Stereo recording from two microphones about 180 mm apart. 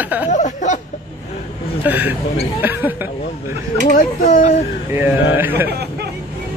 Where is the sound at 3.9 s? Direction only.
45° left (ahead or behind).